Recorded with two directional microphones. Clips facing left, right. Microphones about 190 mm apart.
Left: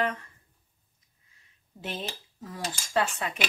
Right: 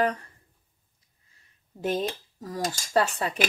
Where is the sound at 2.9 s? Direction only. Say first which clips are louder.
Right 3 dB; 35° right (ahead or behind).